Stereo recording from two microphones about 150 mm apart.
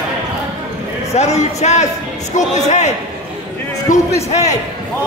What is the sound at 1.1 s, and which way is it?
A man's voice, 45° left (ahead or behind).